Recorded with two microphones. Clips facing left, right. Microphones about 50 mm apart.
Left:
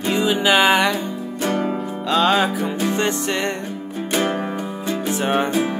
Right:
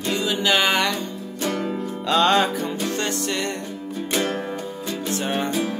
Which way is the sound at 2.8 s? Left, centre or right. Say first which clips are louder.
Left 4 dB; centre.